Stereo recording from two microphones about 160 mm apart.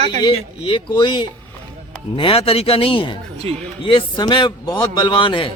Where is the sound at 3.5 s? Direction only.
40° right (ahead or behind).